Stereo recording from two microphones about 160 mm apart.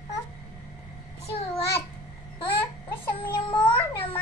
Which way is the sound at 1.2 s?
40° left (ahead or behind).